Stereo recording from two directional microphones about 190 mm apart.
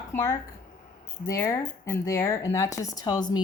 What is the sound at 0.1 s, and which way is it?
Speech, 20° left (ahead or behind).